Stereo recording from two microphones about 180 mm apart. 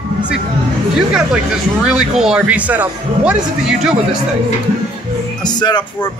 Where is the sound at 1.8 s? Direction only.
5° right (ahead or behind).